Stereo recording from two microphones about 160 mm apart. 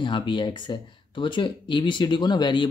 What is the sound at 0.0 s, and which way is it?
Speech, 30° left (ahead or behind).